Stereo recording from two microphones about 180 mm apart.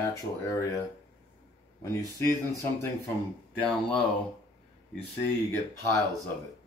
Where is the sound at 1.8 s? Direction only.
15° left (ahead or behind).